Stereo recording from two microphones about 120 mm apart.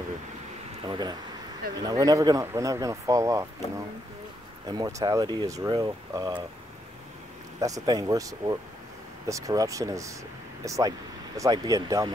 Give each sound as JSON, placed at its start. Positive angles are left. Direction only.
{"t": 0.8, "sound": "speech", "side_deg": -40}
{"t": 7.6, "sound": "speech", "side_deg": -30}